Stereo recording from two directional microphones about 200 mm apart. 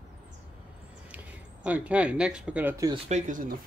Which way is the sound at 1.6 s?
5° right (ahead or behind).